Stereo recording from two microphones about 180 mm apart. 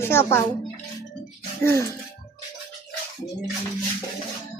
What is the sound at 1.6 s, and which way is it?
Speech, 15° left (ahead or behind).